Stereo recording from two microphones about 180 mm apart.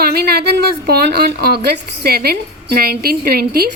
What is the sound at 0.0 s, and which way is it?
Speech, 60° right (ahead or behind).